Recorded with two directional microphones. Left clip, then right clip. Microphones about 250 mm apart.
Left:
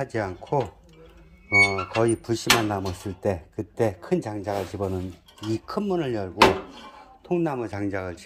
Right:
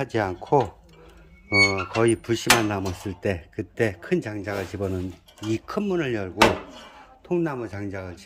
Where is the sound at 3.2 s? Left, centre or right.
Centre.